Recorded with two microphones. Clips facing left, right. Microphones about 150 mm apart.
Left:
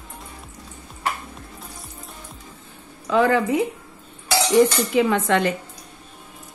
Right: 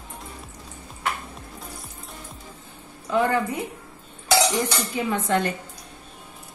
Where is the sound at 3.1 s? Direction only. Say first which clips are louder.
Left 4 dB; 90° left.